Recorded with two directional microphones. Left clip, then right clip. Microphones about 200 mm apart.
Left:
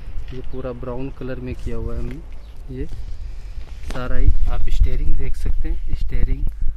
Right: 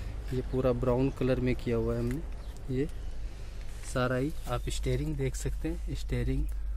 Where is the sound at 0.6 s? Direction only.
10° right (ahead or behind).